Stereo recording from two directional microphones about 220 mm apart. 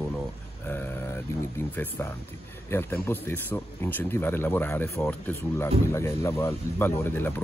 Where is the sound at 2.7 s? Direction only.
10° left (ahead or behind).